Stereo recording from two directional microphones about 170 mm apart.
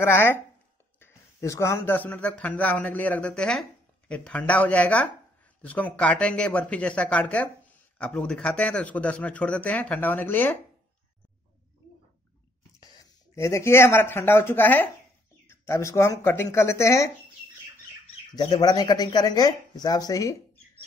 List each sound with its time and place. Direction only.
0.0 s speech: 15° left (ahead or behind)
12.8 s speech: 15° left (ahead or behind)
18.3 s speech: 25° left (ahead or behind)